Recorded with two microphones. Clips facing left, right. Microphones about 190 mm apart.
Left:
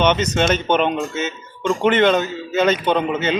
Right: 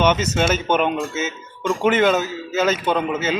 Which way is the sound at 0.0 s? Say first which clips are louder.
Left 1 dB; 5° right (ahead or behind).